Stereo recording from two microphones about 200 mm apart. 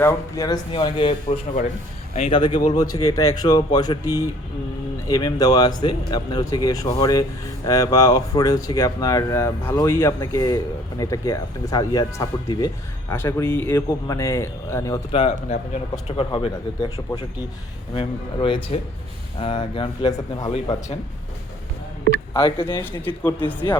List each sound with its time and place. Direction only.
0.0 s speech: 20° left (ahead or behind)
5.0 s speech: 20° left (ahead or behind)
15.1 s speech: 30° left (ahead or behind)
17.0 s speech: 15° left (ahead or behind)
22.3 s speech: 20° left (ahead or behind)
22.8 s speech: 10° left (ahead or behind)